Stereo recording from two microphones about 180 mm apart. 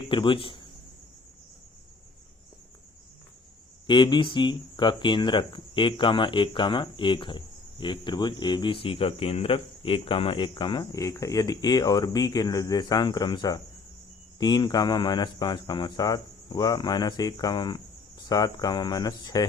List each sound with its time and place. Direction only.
0.0 s speech: 25° left (ahead or behind)
3.8 s speech: 25° left (ahead or behind)